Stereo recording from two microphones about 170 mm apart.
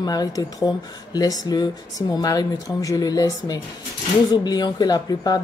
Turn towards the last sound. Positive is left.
turn(degrees=25)  # may be behind; listen again after turning